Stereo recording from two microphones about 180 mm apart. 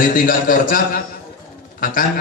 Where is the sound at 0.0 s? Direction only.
50° left (ahead or behind).